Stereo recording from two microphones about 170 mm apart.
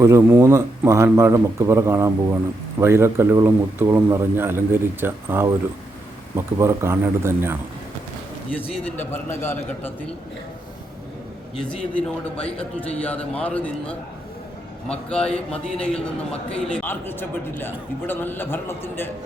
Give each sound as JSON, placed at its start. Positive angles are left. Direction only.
{"t": 0.0, "sound": "speech", "side_deg": -15}
{"t": 8.5, "sound": "a man's voice", "side_deg": 10}
{"t": 11.5, "sound": "a man's voice", "side_deg": 5}